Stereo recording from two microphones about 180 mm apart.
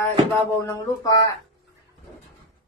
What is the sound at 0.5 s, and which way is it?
Speech, 15° left (ahead or behind).